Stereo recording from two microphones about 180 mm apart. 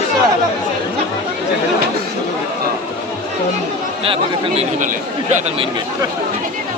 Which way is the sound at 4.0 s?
30° right (ahead or behind).